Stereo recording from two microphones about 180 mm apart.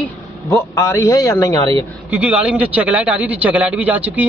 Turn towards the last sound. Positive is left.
turn(degrees=-10)  # may be behind; listen again after turning